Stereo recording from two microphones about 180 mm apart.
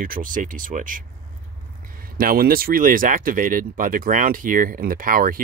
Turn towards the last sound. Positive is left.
turn(degrees=-50)  # may be behind; listen again after turning